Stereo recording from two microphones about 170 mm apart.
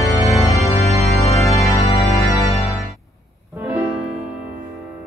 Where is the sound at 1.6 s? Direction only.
20° left (ahead or behind).